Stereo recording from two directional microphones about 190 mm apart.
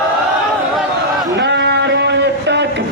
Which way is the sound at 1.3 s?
65° right (ahead or behind).